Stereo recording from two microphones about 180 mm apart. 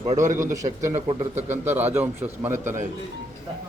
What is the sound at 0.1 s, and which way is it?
A man's voice, 45° right (ahead or behind).